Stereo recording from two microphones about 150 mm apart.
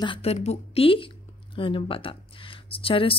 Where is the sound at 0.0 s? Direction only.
40° left (ahead or behind).